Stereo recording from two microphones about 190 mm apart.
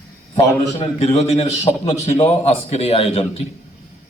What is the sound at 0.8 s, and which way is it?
A man's voice, 35° left (ahead or behind).